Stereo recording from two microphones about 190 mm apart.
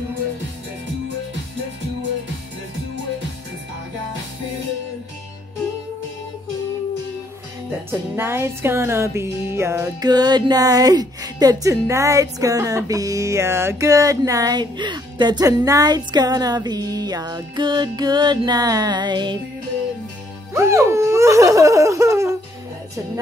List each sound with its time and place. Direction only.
7.9 s music: 10° right (ahead or behind)
20.5 s speech: 15° right (ahead or behind)